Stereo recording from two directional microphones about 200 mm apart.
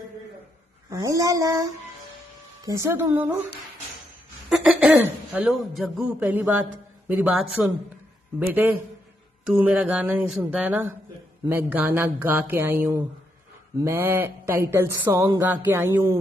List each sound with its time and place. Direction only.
0.8 s speech: 15° right (ahead or behind)
4.5 s speech: 5° right (ahead or behind)